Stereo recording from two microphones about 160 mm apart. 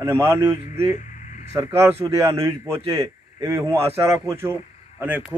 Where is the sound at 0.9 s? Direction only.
50° left (ahead or behind).